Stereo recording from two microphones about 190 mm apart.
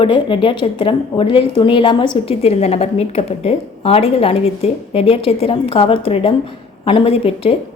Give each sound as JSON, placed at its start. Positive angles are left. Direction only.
{"t": 0.0, "sound": "a woman's voice", "side_deg": 25}